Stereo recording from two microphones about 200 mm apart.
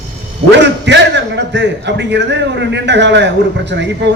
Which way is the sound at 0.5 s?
60° right (ahead or behind).